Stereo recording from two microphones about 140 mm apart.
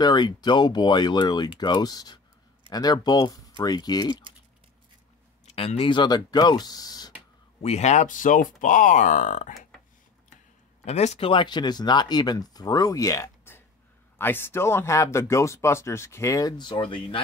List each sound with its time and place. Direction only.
0.0 s speech: 30° left (ahead or behind)
5.5 s speech: 45° left (ahead or behind); by 7.1 s 30° left (ahead or behind)
7.6 s speech: 55° left (ahead or behind)
10.9 s speech: 50° left (ahead or behind); by 17.2 s 35° left (ahead or behind)